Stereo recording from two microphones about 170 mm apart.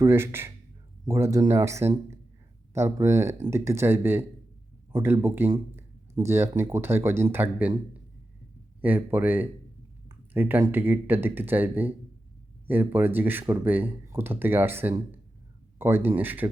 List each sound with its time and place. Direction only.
0.0 s speech: 15° right (ahead or behind)
8.8 s speech: 10° right (ahead or behind)